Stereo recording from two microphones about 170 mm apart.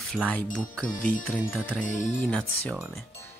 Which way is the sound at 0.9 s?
55° left (ahead or behind).